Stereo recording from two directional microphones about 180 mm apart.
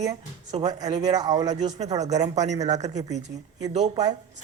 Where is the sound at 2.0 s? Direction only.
40° right (ahead or behind).